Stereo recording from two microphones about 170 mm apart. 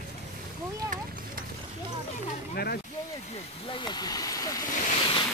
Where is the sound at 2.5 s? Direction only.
70° left (ahead or behind).